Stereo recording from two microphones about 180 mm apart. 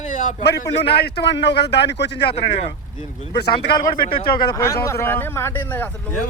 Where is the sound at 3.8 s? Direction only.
55° left (ahead or behind).